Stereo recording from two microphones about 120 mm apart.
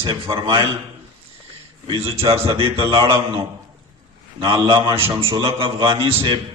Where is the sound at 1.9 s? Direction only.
50° right (ahead or behind).